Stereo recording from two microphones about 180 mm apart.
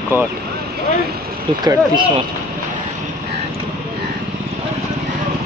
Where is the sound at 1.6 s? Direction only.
20° right (ahead or behind).